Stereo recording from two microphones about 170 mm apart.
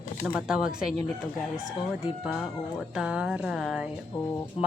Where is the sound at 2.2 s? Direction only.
5° right (ahead or behind).